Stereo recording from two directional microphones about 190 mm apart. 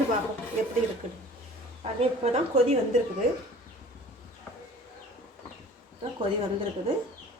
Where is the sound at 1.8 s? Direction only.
35° right (ahead or behind).